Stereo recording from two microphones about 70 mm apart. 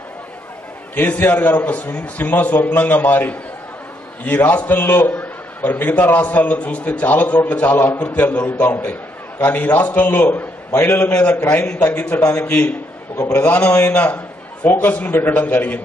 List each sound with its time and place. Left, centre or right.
0.9 s a man's voice: left